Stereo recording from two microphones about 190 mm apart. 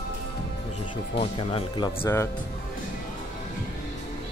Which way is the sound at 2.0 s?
10° left (ahead or behind).